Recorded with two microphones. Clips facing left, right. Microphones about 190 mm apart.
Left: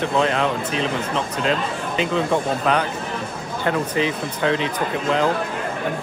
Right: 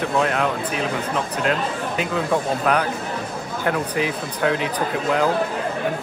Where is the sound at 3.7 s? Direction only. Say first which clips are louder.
Left 1 dB; 5° right (ahead or behind).